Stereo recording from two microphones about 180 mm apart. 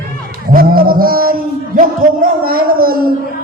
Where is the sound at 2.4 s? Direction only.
55° right (ahead or behind).